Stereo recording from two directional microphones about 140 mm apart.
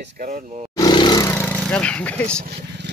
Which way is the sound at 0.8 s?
30° left (ahead or behind).